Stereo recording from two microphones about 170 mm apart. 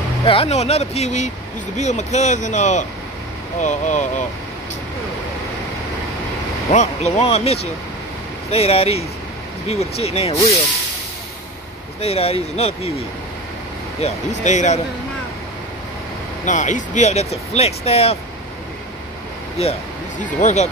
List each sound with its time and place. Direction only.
0.2 s speech: 35° left (ahead or behind)
6.7 s speech: 40° left (ahead or behind)
12.0 s speech: 35° left (ahead or behind)
14.0 s speech: 45° left (ahead or behind)
16.4 s speech: 45° left (ahead or behind)
20.3 s speech: 45° left (ahead or behind)